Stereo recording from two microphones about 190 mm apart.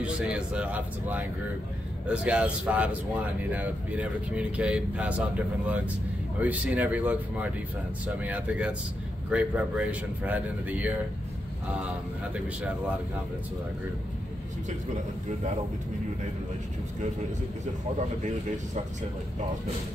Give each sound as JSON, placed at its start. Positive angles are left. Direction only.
{"t": 0.0, "sound": "speech", "side_deg": -5}
{"t": 6.4, "sound": "speech", "side_deg": -5}